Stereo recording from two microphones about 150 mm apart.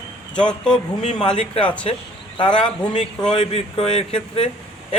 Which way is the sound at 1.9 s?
45° left (ahead or behind).